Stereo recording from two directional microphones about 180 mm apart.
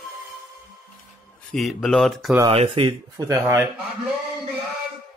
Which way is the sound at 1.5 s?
Centre (ahead or behind).